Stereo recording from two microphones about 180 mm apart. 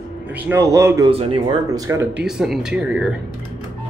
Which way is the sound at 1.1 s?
35° right (ahead or behind).